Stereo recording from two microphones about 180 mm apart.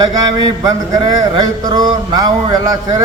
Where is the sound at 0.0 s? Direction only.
20° right (ahead or behind).